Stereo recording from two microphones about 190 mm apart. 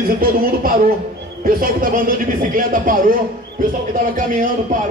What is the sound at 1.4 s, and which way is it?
Speech, 45° right (ahead or behind).